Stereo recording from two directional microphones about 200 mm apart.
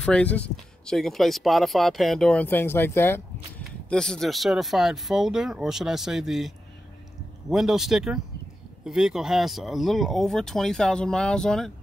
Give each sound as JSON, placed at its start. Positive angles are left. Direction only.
{"t": 0.0, "sound": "speech", "side_deg": 5}